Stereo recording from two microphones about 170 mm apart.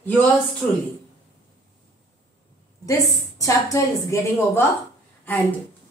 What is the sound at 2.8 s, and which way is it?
A woman's voice, 20° left (ahead or behind).